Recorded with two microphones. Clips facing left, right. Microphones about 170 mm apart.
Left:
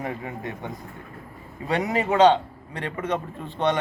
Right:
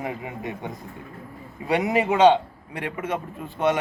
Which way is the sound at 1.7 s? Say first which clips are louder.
Right 2 dB; 15° right (ahead or behind).